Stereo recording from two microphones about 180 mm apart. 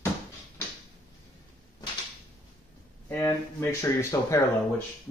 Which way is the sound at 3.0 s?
15° left (ahead or behind).